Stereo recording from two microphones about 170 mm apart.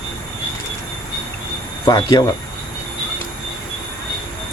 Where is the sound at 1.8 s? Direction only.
25° left (ahead or behind).